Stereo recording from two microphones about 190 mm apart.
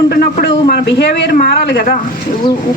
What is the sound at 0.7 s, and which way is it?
Speech, 65° left (ahead or behind).